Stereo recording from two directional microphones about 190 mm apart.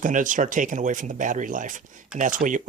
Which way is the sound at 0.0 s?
45° right (ahead or behind).